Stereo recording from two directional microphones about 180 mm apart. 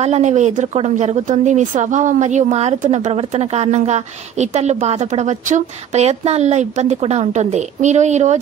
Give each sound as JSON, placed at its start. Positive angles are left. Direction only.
{"t": 0.0, "sound": "speech", "side_deg": -35}